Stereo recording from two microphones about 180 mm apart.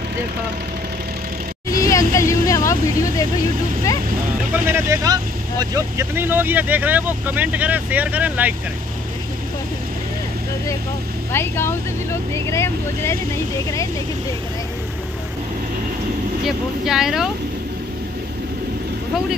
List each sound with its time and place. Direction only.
1.7 s vehicle: 20° left (ahead or behind)
4.6 s speech: 15° right (ahead or behind)
11.3 s speech: 15° left (ahead or behind)
16.4 s speech: centre (ahead or behind)